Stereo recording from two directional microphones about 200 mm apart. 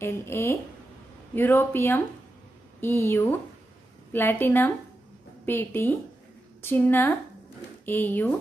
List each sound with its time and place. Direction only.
0.0 s speech: 10° left (ahead or behind)